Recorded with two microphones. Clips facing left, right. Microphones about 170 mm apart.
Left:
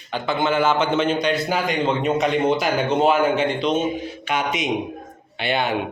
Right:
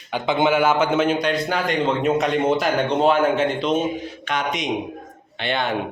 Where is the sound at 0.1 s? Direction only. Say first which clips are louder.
Right 2 dB; 15° right (ahead or behind).